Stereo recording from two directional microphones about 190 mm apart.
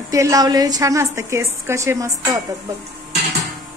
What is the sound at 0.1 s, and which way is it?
A woman's voice, 15° right (ahead or behind).